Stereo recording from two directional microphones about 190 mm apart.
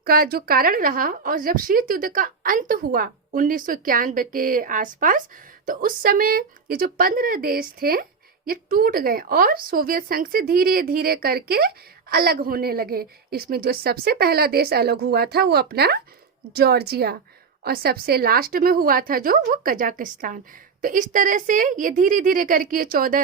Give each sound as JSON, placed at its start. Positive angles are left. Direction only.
{"t": 0.0, "sound": "a woman's voice", "side_deg": -50}